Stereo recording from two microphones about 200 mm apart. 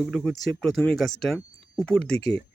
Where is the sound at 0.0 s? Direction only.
Centre (ahead or behind).